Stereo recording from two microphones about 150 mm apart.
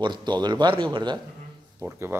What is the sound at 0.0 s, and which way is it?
A man's voice, 30° right (ahead or behind).